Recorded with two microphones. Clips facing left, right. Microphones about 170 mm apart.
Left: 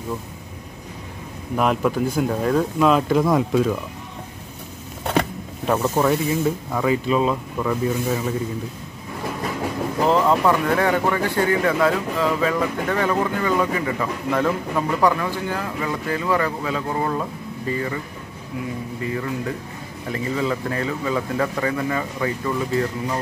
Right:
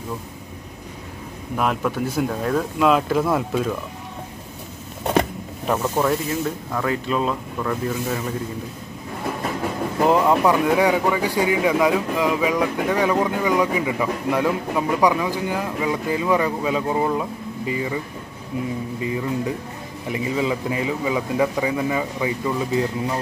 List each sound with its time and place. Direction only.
1.6 s speech: centre (ahead or behind)
5.9 s speech: 5° left (ahead or behind)
10.0 s speech: 15° right (ahead or behind)
19.0 s speech: 20° right (ahead or behind)